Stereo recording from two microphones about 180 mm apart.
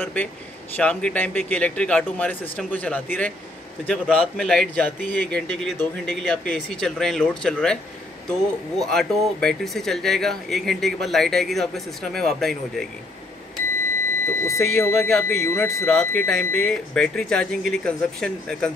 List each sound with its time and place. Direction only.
0.0 s speech: 10° left (ahead or behind)
14.6 s speech: centre (ahead or behind)
15.5 s speech: 15° left (ahead or behind)